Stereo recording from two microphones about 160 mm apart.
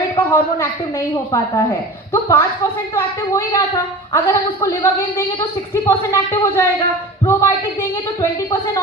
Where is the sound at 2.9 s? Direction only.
15° left (ahead or behind).